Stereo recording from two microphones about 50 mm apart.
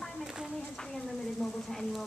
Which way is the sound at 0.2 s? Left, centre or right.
Centre.